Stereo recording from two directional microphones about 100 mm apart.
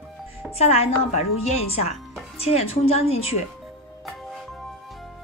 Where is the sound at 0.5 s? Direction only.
90° left.